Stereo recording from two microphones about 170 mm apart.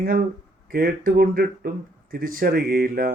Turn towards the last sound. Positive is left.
turn(degrees=-60)  # may be behind; listen again after turning